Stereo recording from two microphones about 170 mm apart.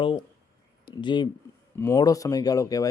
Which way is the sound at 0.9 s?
25° left (ahead or behind).